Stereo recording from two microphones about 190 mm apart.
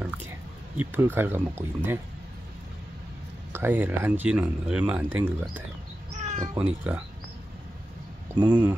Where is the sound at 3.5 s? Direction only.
10° right (ahead or behind).